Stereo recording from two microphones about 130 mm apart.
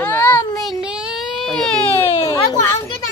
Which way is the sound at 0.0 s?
15° left (ahead or behind).